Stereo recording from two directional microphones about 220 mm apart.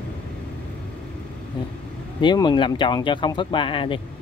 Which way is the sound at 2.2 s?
20° left (ahead or behind).